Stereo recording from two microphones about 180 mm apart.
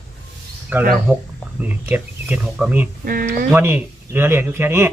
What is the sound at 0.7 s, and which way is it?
Speech, 10° right (ahead or behind).